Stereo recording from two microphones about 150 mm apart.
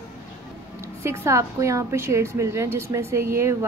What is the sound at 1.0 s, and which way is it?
A woman's voice, 15° right (ahead or behind).